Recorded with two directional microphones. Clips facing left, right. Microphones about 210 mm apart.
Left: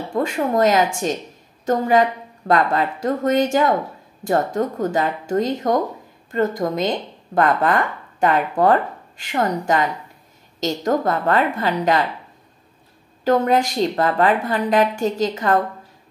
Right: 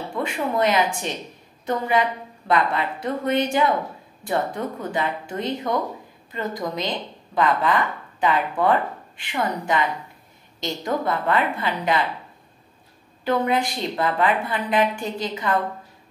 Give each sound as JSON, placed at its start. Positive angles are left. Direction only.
{"t": 0.2, "sound": "a woman's voice", "side_deg": 45}
{"t": 13.2, "sound": "a woman's voice", "side_deg": 45}